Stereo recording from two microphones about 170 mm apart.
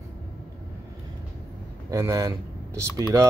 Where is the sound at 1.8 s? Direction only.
20° right (ahead or behind).